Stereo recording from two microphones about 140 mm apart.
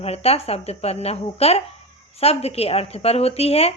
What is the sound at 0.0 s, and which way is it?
Speech, 45° left (ahead or behind).